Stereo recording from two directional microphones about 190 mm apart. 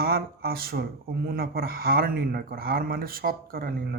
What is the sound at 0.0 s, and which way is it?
Speech, 50° right (ahead or behind).